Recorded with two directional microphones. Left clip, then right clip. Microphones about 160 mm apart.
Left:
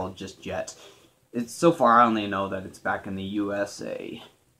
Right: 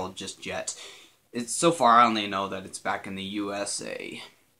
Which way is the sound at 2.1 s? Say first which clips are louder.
Left 1 dB; 10° right (ahead or behind).